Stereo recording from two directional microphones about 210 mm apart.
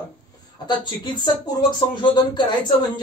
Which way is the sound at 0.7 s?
20° left (ahead or behind).